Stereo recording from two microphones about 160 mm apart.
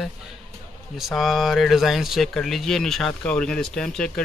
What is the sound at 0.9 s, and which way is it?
Speech, centre (ahead or behind).